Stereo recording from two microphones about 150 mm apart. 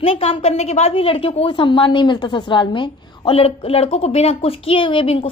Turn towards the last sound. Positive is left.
turn(degrees=35)  # may be behind; listen again after turning